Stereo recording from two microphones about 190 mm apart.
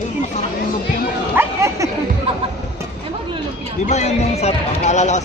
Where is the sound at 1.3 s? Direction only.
15° right (ahead or behind).